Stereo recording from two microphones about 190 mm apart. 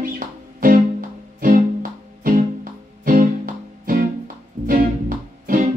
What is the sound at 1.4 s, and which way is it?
Music, 45° right (ahead or behind).